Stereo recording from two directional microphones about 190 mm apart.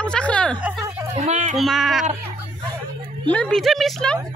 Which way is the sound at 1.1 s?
35° right (ahead or behind).